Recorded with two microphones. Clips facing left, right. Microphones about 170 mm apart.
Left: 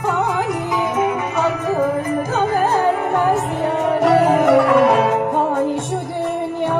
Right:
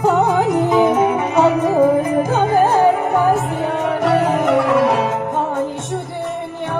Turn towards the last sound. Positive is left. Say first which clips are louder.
# left 2 dB
turn(degrees=10)  # may be behind; listen again after turning